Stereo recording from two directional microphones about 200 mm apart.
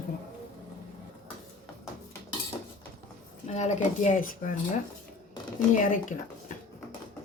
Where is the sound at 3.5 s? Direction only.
35° left (ahead or behind).